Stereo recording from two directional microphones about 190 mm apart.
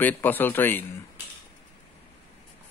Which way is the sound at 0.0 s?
10° left (ahead or behind).